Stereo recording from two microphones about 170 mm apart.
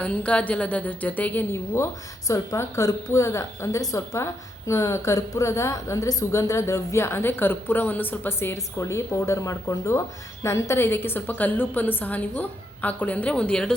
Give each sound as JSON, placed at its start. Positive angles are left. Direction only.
{"t": 0.0, "sound": "a woman's voice", "side_deg": 5}